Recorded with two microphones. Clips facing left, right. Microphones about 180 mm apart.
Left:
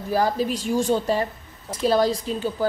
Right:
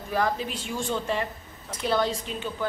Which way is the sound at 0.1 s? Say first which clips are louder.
Left 5 dB; 35° left (ahead or behind).